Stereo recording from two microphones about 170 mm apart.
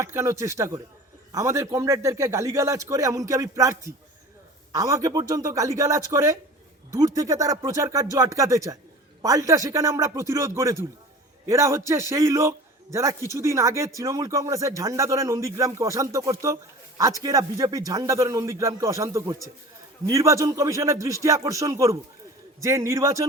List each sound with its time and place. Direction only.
0.0 s a man's voice: 15° right (ahead or behind)